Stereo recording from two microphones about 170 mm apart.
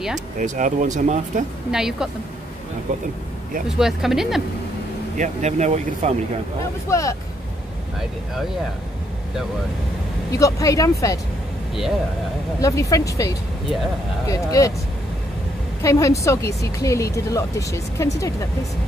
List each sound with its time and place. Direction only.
0.4 s speech: 50° right (ahead or behind)
1.7 s speech: 5° right (ahead or behind)
3.6 s speech: 5° right (ahead or behind)
5.1 s speech: 45° right (ahead or behind)
6.9 s speech: 20° left (ahead or behind)
10.3 s speech: 20° left (ahead or behind)
12.5 s speech: 20° left (ahead or behind)
14.3 s speech: 20° left (ahead or behind)
15.8 s speech: 20° left (ahead or behind)